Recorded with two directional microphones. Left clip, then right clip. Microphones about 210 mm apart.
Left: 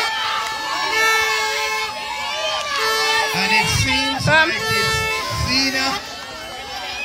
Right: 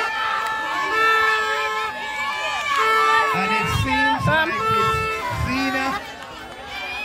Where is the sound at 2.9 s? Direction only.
45° right (ahead or behind).